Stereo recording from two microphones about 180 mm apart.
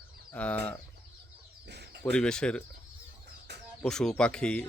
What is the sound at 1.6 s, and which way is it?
Bird, 70° right (ahead or behind).